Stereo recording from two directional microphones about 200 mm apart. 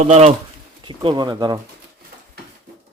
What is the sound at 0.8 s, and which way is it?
Speech, 20° right (ahead or behind).